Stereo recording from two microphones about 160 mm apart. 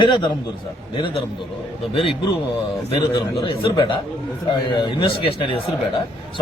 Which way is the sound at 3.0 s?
30° left (ahead or behind).